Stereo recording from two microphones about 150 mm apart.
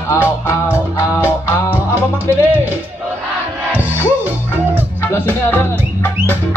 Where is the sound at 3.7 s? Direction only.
10° right (ahead or behind).